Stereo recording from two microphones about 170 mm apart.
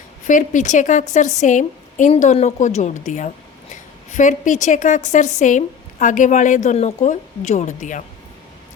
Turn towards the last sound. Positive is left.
turn(degrees=45)  # may be behind; listen again after turning